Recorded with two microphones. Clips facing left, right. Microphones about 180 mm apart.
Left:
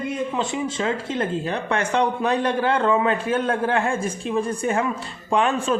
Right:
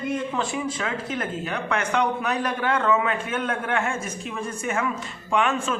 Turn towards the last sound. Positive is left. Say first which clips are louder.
# left 3 dB
turn(degrees=35)  # may be behind; listen again after turning